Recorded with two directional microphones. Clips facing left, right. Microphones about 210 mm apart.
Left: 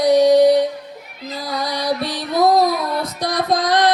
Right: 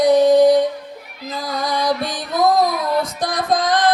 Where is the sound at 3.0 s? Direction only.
50° right (ahead or behind).